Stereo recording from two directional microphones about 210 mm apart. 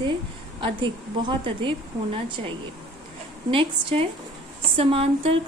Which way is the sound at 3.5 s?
25° right (ahead or behind).